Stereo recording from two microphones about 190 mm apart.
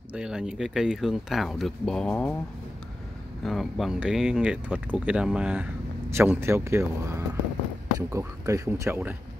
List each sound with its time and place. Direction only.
0.1 s speech: 5° right (ahead or behind)
3.4 s speech: centre (ahead or behind)